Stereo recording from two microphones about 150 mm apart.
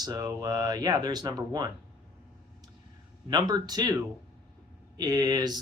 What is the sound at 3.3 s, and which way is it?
Speech, 25° right (ahead or behind).